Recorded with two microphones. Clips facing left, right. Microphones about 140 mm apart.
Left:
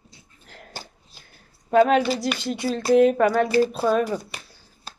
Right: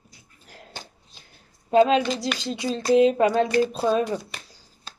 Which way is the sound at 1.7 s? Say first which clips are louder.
Left 1 dB; 55° left (ahead or behind).